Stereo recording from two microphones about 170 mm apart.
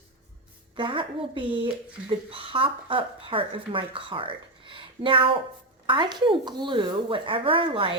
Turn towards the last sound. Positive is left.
turn(degrees=-30)  # may be behind; listen again after turning